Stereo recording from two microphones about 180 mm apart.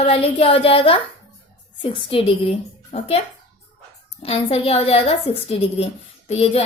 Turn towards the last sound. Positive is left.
turn(degrees=35)  # may be behind; listen again after turning